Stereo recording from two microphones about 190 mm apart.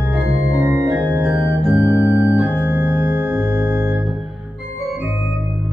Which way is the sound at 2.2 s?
5° right (ahead or behind).